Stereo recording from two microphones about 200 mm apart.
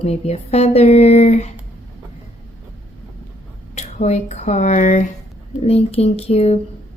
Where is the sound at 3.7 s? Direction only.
35° left (ahead or behind).